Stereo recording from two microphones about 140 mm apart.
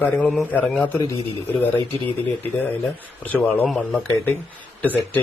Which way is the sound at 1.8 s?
40° right (ahead or behind).